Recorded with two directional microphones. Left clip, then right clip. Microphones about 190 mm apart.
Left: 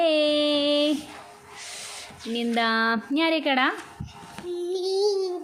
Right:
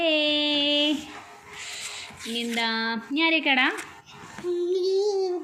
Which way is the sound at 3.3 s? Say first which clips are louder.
Right 2 dB; 25° left (ahead or behind).